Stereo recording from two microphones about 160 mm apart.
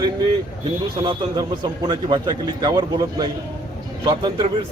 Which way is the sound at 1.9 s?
25° right (ahead or behind).